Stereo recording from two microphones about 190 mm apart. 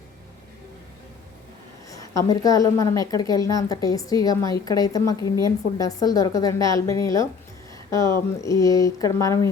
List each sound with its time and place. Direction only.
1.9 s a woman's voice: 20° left (ahead or behind)